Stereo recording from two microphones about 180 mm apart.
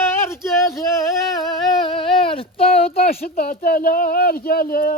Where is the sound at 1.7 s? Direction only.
25° left (ahead or behind).